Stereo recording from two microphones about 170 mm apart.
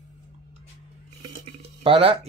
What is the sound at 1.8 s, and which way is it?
Speech, 35° right (ahead or behind).